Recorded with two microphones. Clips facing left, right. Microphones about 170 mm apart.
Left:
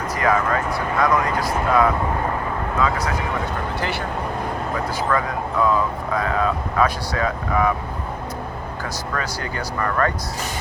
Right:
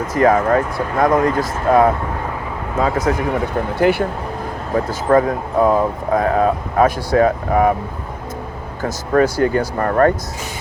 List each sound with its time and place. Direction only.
0.1 s speech: 45° right (ahead or behind)
2.7 s speech: 45° right (ahead or behind)
4.7 s speech: 40° right (ahead or behind)
8.8 s speech: 50° right (ahead or behind)